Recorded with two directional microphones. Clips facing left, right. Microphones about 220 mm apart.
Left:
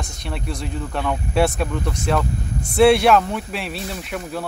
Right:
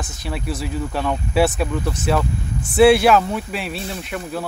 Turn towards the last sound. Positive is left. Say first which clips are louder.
# right 1 dB
turn(degrees=0)  # may be behind; listen again after turning